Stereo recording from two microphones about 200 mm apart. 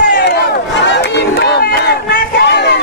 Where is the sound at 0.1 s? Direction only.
60° left (ahead or behind).